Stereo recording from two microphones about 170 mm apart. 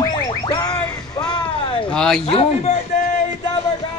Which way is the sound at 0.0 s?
25° left (ahead or behind).